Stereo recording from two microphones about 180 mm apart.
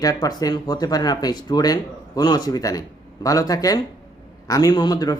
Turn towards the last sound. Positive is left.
turn(degrees=20)  # may be behind; listen again after turning